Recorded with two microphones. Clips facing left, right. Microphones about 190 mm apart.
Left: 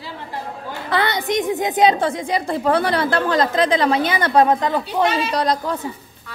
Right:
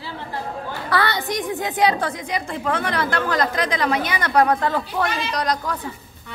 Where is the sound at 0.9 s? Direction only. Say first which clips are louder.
Left 3 dB; 20° left (ahead or behind).